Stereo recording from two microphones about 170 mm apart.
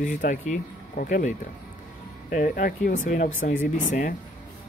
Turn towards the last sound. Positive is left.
turn(degrees=50)  # may be behind; listen again after turning